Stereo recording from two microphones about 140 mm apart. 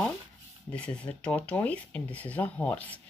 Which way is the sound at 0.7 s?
10° left (ahead or behind).